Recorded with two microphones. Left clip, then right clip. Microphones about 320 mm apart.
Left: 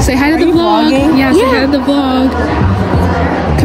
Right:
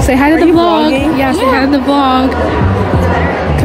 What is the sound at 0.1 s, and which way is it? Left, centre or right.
Speech, centre.